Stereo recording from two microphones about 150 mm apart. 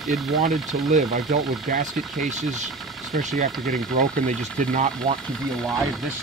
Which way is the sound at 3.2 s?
65° right (ahead or behind).